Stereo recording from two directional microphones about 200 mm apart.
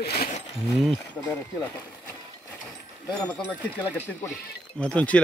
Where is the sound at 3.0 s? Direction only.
5° left (ahead or behind).